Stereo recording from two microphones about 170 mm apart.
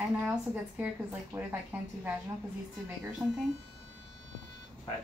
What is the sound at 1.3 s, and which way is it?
Speech, 10° right (ahead or behind).